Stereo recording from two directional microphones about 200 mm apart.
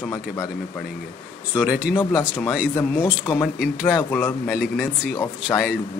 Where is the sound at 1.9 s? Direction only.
20° left (ahead or behind).